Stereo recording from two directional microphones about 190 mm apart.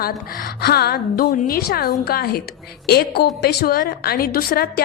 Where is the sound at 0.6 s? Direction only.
55° left (ahead or behind).